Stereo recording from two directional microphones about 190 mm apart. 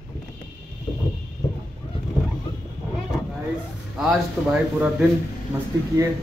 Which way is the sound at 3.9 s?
5° right (ahead or behind).